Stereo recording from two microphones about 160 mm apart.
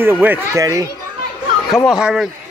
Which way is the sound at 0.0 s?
10° right (ahead or behind).